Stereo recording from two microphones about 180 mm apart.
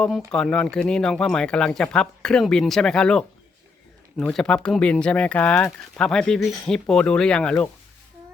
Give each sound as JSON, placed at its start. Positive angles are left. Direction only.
{"t": 0.3, "sound": "speech", "side_deg": 5}